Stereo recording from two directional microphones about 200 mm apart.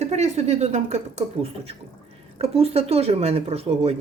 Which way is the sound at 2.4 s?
30° right (ahead or behind).